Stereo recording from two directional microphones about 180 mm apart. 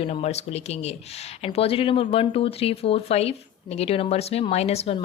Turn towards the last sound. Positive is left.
turn(degrees=35)  # may be behind; listen again after turning